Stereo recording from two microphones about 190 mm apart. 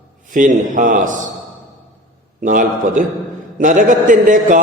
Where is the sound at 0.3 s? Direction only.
45° right (ahead or behind).